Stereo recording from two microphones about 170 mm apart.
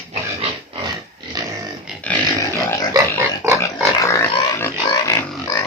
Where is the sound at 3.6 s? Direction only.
15° left (ahead or behind).